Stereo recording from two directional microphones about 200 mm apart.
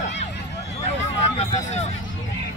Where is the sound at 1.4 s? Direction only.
35° left (ahead or behind).